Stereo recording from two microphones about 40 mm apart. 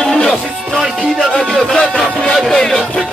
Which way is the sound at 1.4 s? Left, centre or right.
Centre.